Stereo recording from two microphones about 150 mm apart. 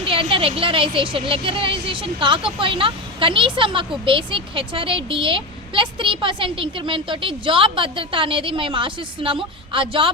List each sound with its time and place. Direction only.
0.0 s a woman's voice: 35° right (ahead or behind)